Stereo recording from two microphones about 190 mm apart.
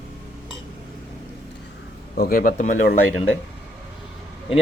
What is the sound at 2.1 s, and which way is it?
Speech, 50° left (ahead or behind).